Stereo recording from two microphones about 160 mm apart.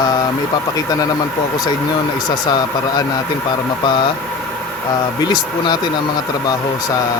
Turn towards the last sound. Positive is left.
turn(degrees=25)  # may be behind; listen again after turning